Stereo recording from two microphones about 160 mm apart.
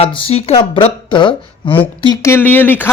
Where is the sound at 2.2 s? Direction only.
15° left (ahead or behind).